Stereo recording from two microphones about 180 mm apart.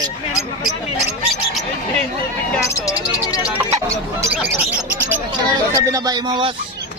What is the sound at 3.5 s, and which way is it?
Speech, 15° right (ahead or behind).